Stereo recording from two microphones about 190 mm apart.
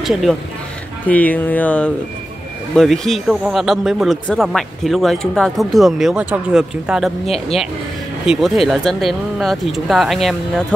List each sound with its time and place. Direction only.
0.0 s speech: centre (ahead or behind)
7.2 s speech: 30° left (ahead or behind)
8.3 s speech: centre (ahead or behind)